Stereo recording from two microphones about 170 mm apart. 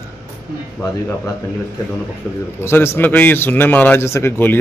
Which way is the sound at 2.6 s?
15° left (ahead or behind).